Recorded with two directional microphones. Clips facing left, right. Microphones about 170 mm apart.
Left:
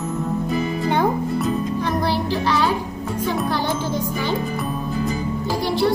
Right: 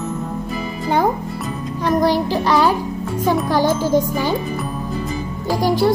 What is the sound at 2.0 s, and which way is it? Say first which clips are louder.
Child singing: right 5 dB; 40° right (ahead or behind).